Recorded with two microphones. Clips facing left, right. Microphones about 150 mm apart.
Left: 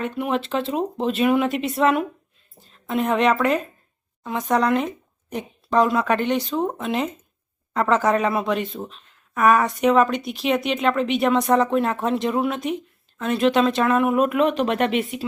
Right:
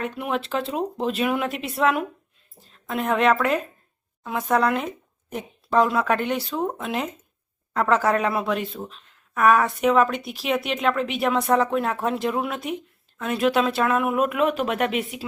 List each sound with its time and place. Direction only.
0.0 s speech: centre (ahead or behind)
6.6 s speech: 10° left (ahead or behind)
6.8 s speech: 5° right (ahead or behind)